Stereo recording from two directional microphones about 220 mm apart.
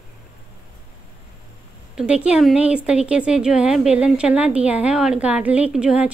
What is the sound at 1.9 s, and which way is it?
Speech, 5° right (ahead or behind).